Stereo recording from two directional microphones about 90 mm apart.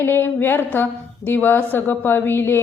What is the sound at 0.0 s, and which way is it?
A woman's voice, 25° left (ahead or behind).